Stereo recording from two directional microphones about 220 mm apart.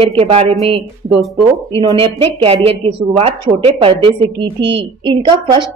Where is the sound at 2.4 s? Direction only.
25° right (ahead or behind).